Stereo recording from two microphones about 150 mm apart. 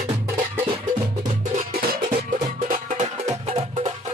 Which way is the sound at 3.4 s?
45° right (ahead or behind).